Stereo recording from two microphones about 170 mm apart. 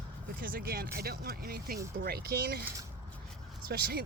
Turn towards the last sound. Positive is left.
turn(degrees=-65)  # may be behind; listen again after turning